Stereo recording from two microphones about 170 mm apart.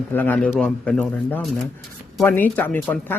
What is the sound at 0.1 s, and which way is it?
Speech, 10° left (ahead or behind).